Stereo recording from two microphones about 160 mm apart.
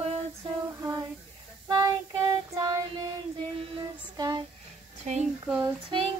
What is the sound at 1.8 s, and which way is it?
Child singing, 20° right (ahead or behind).